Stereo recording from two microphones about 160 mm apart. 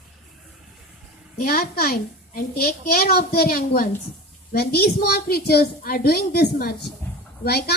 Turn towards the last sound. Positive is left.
turn(degrees=80)